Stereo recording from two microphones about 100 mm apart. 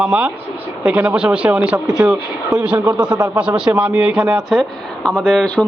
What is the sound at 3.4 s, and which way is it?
A man's voice, 10° right (ahead or behind).